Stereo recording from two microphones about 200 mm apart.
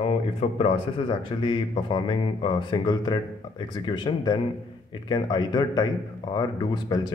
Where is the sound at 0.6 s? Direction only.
25° left (ahead or behind).